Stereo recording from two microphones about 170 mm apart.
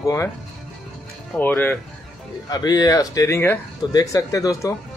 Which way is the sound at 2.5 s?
20° left (ahead or behind).